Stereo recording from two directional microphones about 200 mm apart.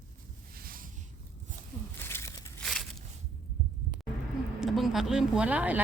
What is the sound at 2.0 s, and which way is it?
Crumpling, 10° left (ahead or behind).